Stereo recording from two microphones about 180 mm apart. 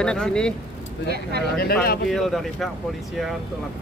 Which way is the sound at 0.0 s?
5° left (ahead or behind).